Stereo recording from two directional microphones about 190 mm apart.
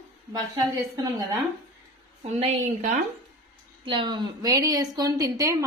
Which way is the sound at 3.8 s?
25° right (ahead or behind).